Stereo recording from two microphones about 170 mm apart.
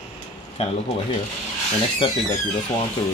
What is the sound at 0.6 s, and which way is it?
Speech, 40° left (ahead or behind).